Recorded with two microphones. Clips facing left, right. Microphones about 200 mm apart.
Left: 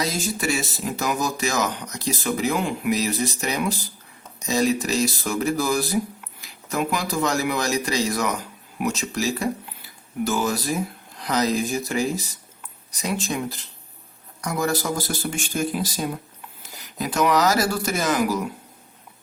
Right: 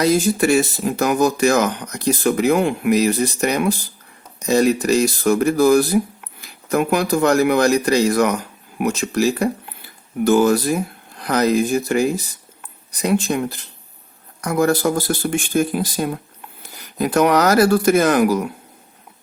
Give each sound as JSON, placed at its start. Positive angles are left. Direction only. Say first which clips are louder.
{"t": 0.0, "sound": "speech", "louder": "right 10 dB", "side_deg": -55}